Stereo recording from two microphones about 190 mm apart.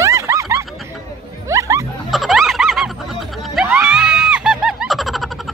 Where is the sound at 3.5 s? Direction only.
10° right (ahead or behind).